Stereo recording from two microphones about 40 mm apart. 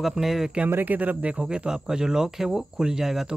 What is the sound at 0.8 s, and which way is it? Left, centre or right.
Speech, right.